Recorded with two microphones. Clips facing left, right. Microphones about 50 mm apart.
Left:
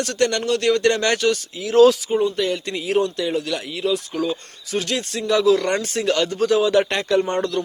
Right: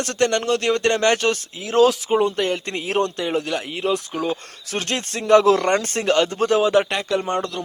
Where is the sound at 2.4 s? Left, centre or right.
Right.